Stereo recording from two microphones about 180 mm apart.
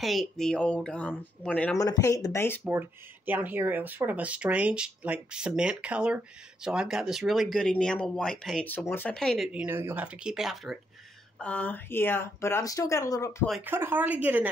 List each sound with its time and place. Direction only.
0.0 s speech: centre (ahead or behind)
1.8 s speech: 20° left (ahead or behind)
2.6 s speech: 10° right (ahead or behind); by 13.4 s 15° left (ahead or behind)
13.7 s a woman's voice: 10° right (ahead or behind)